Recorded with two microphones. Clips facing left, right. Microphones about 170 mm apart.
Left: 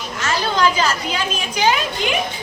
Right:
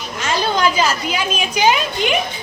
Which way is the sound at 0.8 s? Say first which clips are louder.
Right 2 dB; 10° right (ahead or behind).